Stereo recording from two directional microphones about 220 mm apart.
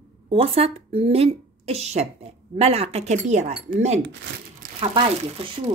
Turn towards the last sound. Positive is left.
turn(degrees=-25)  # may be behind; listen again after turning